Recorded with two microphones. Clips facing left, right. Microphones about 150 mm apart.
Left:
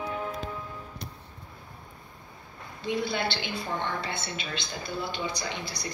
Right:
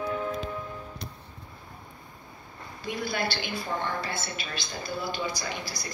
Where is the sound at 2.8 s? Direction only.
25° left (ahead or behind).